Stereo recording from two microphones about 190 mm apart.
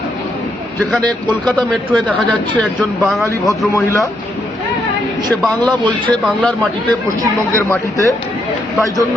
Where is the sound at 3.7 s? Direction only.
15° left (ahead or behind).